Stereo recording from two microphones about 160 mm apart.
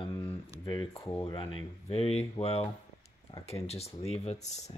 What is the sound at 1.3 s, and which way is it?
Speech, 30° left (ahead or behind).